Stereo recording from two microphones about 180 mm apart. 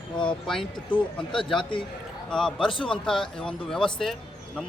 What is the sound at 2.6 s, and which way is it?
Speech, 25° left (ahead or behind).